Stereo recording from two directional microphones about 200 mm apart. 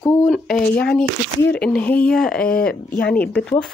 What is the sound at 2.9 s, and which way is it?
Speech, 50° left (ahead or behind).